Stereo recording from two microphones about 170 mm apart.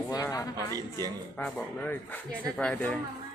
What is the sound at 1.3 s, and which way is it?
Speech, 10° left (ahead or behind).